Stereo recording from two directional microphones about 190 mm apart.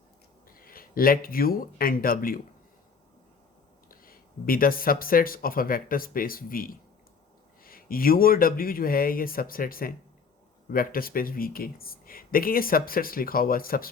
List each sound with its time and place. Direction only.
0.4 s speech: 50° left (ahead or behind)
3.8 s speech: 50° left (ahead or behind)